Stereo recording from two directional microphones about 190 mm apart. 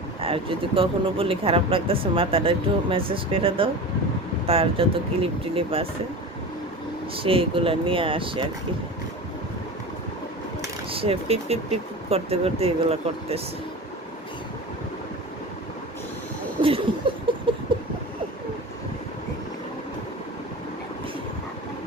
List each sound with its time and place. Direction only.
0.2 s speech: 30° right (ahead or behind)
7.2 s speech: 30° right (ahead or behind)
10.9 s speech: 30° right (ahead or behind)
16.6 s a sound: 30° right (ahead or behind)